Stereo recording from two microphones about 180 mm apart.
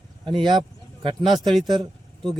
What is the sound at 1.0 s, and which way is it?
Speech, 30° right (ahead or behind).